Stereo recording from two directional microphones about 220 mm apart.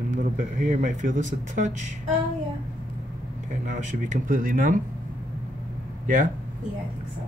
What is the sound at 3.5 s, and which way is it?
Speech, 35° right (ahead or behind).